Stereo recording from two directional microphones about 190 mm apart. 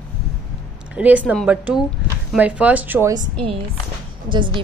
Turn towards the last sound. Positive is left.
turn(degrees=-25)  # may be behind; listen again after turning